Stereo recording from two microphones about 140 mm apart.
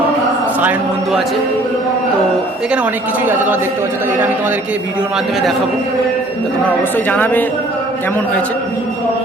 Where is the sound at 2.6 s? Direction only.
10° right (ahead or behind).